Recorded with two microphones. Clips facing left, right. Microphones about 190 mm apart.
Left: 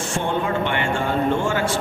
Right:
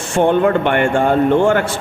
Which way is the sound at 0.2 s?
60° right (ahead or behind).